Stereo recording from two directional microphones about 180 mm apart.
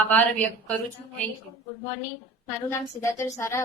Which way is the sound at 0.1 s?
10° left (ahead or behind).